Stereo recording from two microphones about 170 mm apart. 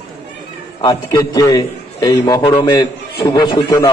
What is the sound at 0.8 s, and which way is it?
A man's voice, 25° left (ahead or behind).